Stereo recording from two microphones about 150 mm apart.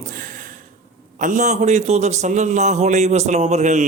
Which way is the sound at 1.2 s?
55° right (ahead or behind).